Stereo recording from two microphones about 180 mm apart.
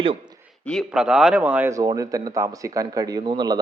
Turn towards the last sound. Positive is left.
turn(degrees=-25)  # may be behind; listen again after turning